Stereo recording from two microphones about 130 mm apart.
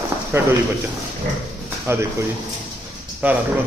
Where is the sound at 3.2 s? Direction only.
10° right (ahead or behind).